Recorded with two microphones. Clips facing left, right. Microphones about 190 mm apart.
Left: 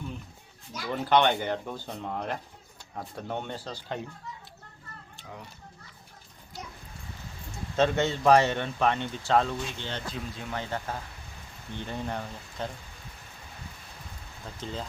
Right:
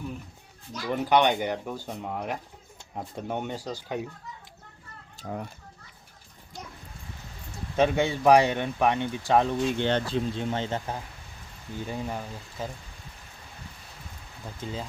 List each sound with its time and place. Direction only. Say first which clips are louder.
0.9 s speech: right 1 dB; 15° right (ahead or behind)
5.1 s speech: right 10 dB; 45° right (ahead or behind)
7.8 s speech: right 2 dB; 10° right (ahead or behind)
9.7 s speech: right 11 dB; 65° right (ahead or behind)
10.1 s speech: right 8 dB; 25° right (ahead or behind)
11.8 s speech: right 1 dB; 5° right (ahead or behind)
14.6 s speech: right 1 dB; 10° right (ahead or behind)